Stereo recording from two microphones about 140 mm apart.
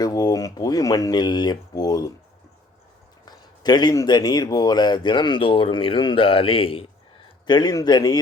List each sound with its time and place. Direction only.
0.0 s a sound: 25° left (ahead or behind)
3.2 s speech: 30° left (ahead or behind)
7.4 s speech: 30° left (ahead or behind)